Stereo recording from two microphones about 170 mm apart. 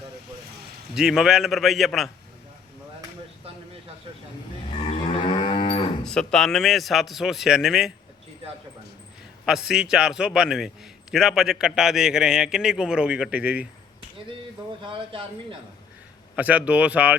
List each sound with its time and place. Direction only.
0.9 s a man's voice: centre (ahead or behind)
4.8 s moo: 35° left (ahead or behind)
6.1 s a man's voice: 5° left (ahead or behind)
9.5 s a man's voice: 5° right (ahead or behind)
14.8 s speech: 30° right (ahead or behind)
16.3 s speech: 10° right (ahead or behind)